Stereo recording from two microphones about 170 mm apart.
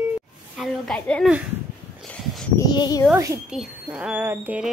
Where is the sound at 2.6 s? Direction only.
25° left (ahead or behind).